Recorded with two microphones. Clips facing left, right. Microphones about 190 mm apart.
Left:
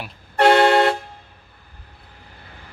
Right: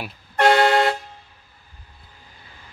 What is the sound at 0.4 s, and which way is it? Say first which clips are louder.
Vehicle horn: left 2 dB; 60° left (ahead or behind).